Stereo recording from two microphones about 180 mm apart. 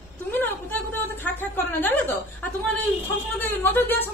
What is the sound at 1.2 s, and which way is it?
Speech, 10° left (ahead or behind).